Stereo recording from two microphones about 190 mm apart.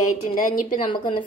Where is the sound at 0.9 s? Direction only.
25° left (ahead or behind).